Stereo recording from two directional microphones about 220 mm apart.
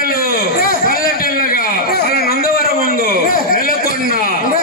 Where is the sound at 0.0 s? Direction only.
40° left (ahead or behind).